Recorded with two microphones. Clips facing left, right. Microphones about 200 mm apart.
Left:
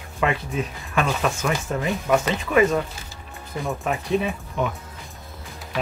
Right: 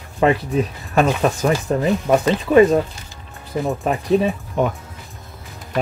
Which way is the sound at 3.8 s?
30° right (ahead or behind).